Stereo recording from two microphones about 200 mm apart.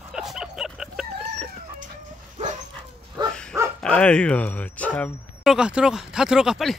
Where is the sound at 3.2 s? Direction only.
20° right (ahead or behind).